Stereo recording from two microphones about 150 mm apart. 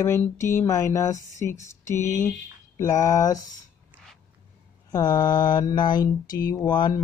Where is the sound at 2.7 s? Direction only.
20° left (ahead or behind).